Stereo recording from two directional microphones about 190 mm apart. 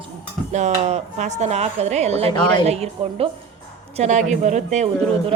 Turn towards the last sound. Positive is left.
turn(degrees=-35)  # may be behind; listen again after turning